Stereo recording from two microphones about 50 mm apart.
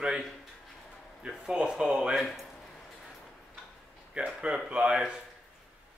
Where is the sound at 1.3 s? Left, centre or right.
Centre.